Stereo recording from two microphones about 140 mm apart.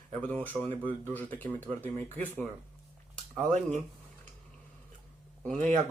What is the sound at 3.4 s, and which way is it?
Speech, 60° right (ahead or behind).